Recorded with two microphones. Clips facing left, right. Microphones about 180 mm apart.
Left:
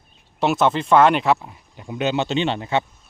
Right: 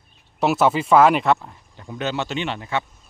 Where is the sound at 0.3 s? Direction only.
5° right (ahead or behind); by 2.8 s 25° left (ahead or behind).